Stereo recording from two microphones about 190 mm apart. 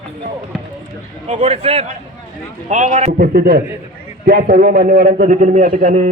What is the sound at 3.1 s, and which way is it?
A man's voice, 50° right (ahead or behind).